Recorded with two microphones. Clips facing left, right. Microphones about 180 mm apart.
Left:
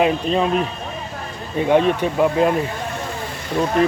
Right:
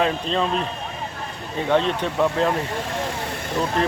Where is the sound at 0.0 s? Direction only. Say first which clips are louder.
Left 4 dB; 10° left (ahead or behind).